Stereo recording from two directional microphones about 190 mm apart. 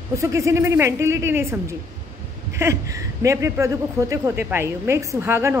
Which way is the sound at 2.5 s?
15° right (ahead or behind).